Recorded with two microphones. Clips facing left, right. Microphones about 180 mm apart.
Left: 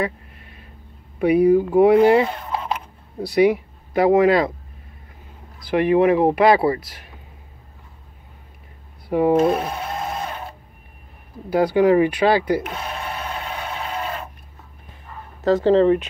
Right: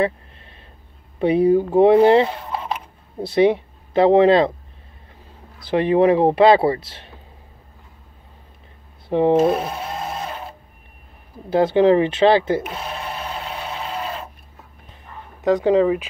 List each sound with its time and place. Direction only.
0.0 s a sound: 30° right (ahead or behind)
1.2 s speech: 25° right (ahead or behind)
5.6 s speech: 30° right (ahead or behind)
9.1 s speech: 25° right (ahead or behind)
9.4 s a sound: 5° right (ahead or behind)
11.5 s speech: 25° right (ahead or behind)
12.6 s speech: centre (ahead or behind)
15.4 s speech: 15° right (ahead or behind)